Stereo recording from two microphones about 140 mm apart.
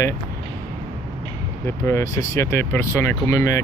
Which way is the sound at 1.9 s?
20° left (ahead or behind).